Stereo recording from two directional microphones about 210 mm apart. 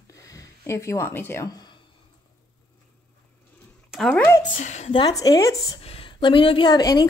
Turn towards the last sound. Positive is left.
turn(degrees=20)  # may be behind; listen again after turning